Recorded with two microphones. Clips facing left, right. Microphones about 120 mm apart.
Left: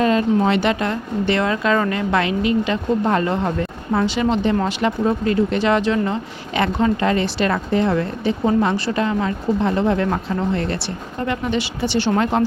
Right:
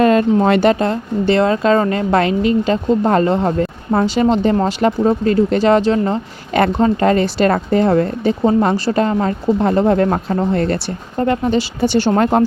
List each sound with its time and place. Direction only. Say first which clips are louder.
0.0 s speech: right 4 dB; 50° right (ahead or behind)